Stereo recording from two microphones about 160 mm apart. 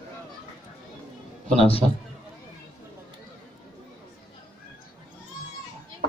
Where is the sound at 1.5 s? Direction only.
35° left (ahead or behind).